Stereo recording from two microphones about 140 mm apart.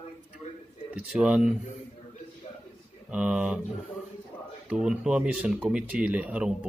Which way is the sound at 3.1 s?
10° right (ahead or behind).